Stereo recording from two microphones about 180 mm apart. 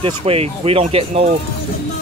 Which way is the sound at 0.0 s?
35° right (ahead or behind).